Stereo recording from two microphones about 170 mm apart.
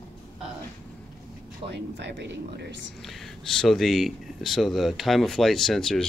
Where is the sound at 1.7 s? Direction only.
90° right.